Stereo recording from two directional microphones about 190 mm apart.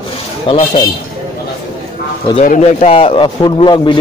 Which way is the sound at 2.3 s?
40° left (ahead or behind).